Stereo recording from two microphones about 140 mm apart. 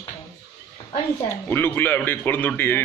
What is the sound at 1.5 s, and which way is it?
A man's voice, 15° left (ahead or behind).